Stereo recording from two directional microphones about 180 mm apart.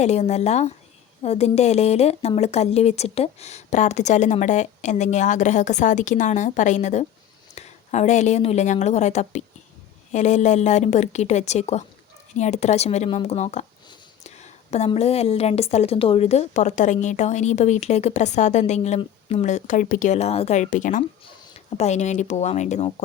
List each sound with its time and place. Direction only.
0.0 s a woman's voice: 40° left (ahead or behind)
14.3 s whispering: 40° left (ahead or behind)
14.8 s a woman's voice: 35° left (ahead or behind)